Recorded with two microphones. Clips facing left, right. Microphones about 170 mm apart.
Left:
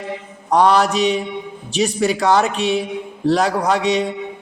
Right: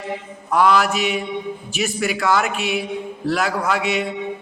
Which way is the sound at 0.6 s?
35° left (ahead or behind).